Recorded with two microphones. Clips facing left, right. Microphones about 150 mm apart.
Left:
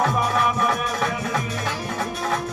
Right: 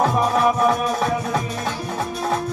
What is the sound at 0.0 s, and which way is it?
Music, 35° right (ahead or behind).